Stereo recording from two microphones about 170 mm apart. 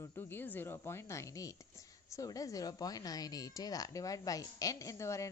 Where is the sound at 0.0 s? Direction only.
15° left (ahead or behind).